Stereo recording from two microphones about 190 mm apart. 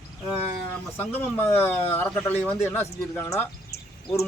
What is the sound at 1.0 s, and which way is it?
A man's voice, 10° left (ahead or behind).